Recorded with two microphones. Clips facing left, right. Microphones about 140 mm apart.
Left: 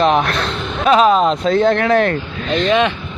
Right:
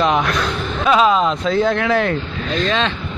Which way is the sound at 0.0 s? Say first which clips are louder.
Left 2 dB; 60° left (ahead or behind).